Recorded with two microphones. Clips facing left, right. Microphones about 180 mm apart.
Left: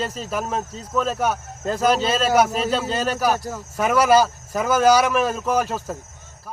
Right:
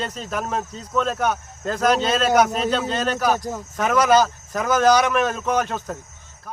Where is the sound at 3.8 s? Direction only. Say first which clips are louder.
Left 1 dB; 5° left (ahead or behind).